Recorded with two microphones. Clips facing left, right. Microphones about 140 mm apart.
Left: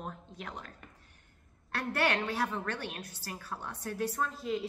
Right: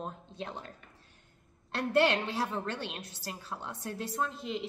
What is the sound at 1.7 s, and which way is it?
A woman's voice, 25° right (ahead or behind).